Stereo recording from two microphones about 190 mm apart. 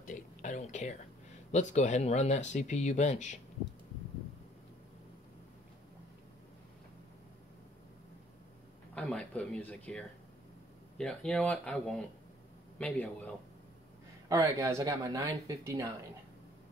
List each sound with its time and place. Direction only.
0.0 s a sound: 45° left (ahead or behind)
1.5 s speech: 40° left (ahead or behind)
8.9 s speech: 5° left (ahead or behind)
14.3 s speech: 15° right (ahead or behind)